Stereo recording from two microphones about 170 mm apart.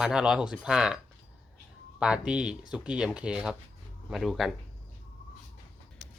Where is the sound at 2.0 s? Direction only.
5° right (ahead or behind).